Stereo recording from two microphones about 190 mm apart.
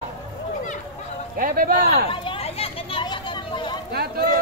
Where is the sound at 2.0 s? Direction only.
25° left (ahead or behind).